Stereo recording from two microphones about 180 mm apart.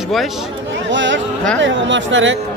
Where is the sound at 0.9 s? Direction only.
90° right.